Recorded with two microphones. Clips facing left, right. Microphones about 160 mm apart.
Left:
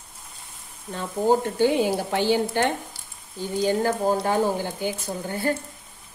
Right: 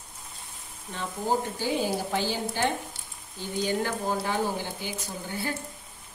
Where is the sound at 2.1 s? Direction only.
65° left (ahead or behind).